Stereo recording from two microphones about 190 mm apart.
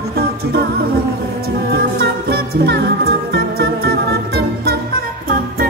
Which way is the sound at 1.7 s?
55° right (ahead or behind).